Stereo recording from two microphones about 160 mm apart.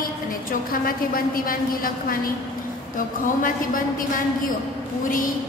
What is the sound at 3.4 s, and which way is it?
Speech, 60° left (ahead or behind).